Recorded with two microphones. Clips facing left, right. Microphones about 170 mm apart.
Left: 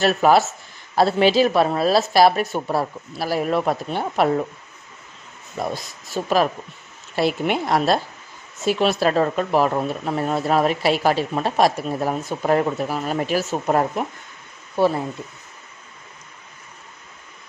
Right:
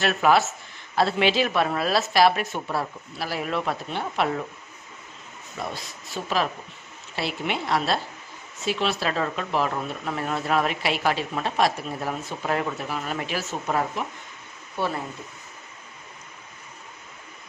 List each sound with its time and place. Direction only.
0.0 s speech: 35° left (ahead or behind)
5.6 s speech: 40° left (ahead or behind)